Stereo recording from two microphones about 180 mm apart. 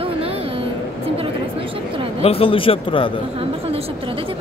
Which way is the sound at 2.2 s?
30° left (ahead or behind).